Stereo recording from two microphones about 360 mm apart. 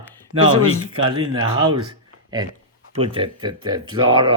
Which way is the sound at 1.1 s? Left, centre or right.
Centre.